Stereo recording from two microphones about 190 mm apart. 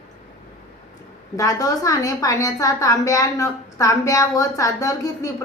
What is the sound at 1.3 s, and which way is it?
A woman's voice, 20° left (ahead or behind).